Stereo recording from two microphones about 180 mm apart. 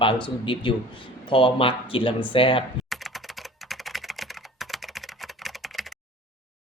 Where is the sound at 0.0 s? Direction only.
25° left (ahead or behind).